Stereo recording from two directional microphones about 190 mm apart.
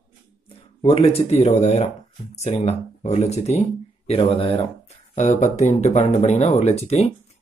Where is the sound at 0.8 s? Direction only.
30° left (ahead or behind).